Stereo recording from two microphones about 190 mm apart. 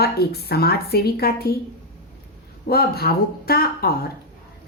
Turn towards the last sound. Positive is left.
turn(degrees=55)  # may be behind; listen again after turning